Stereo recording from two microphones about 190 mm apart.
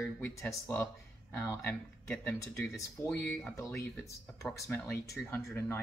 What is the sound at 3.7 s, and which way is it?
Speech, 15° left (ahead or behind).